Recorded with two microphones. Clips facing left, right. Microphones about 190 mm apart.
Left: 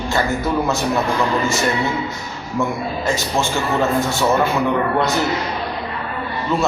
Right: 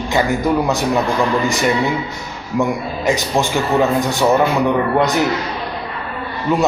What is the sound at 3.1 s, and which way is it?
Speech, 15° right (ahead or behind).